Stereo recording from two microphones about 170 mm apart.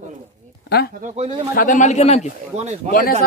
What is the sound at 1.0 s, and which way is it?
Speech, 40° right (ahead or behind).